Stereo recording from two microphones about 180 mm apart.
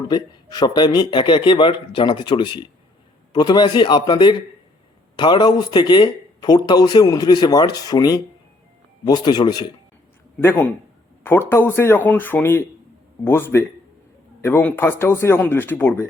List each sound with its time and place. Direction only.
0.1 s speech: 25° left (ahead or behind)
10.4 s speech: 10° left (ahead or behind)